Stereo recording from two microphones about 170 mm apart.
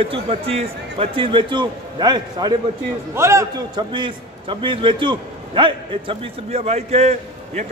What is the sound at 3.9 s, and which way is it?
A man's voice, 30° right (ahead or behind).